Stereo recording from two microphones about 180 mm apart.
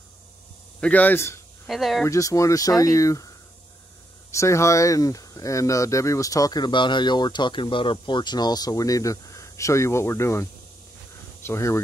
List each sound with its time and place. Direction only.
0.7 s speech: 10° left (ahead or behind)
1.7 s speech: centre (ahead or behind)
2.0 s speech: 20° left (ahead or behind)
4.3 s speech: 15° left (ahead or behind)
11.4 s speech: 15° left (ahead or behind)